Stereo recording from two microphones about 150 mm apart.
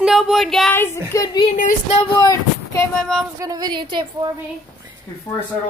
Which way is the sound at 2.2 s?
20° left (ahead or behind).